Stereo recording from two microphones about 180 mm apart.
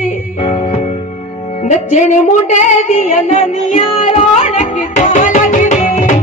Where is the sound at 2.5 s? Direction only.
40° left (ahead or behind).